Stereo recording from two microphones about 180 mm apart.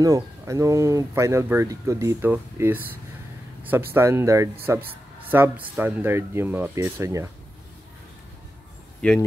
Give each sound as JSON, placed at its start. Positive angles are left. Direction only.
{"t": 0.0, "sound": "speech", "side_deg": -15}
{"t": 9.0, "sound": "speech", "side_deg": 5}